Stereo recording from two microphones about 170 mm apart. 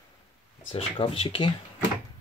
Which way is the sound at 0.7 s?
35° left (ahead or behind).